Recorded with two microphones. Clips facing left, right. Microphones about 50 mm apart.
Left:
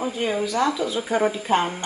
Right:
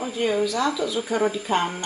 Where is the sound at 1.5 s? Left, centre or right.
Centre.